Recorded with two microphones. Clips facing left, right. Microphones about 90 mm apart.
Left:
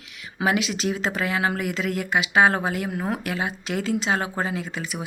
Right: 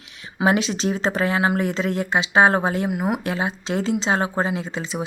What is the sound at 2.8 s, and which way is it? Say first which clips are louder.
Speech: right 4 dB; 15° right (ahead or behind).